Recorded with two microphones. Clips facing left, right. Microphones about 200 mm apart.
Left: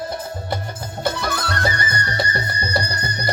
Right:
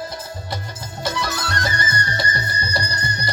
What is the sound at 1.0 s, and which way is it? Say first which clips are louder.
Music: left 2 dB; 55° left (ahead or behind).